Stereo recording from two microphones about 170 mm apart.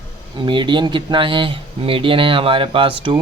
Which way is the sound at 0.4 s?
25° right (ahead or behind).